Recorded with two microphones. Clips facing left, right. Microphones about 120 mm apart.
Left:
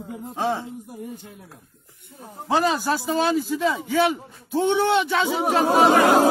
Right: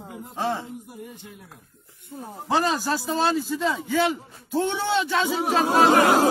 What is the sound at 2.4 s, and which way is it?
Speech, centre (ahead or behind).